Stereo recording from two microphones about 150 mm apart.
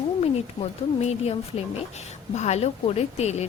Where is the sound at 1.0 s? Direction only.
45° left (ahead or behind).